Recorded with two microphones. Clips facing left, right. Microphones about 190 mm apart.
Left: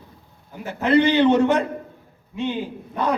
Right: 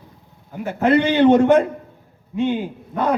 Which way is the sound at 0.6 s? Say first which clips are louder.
Right 1 dB; 55° right (ahead or behind).